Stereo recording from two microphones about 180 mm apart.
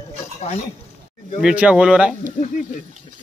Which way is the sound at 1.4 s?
5° right (ahead or behind).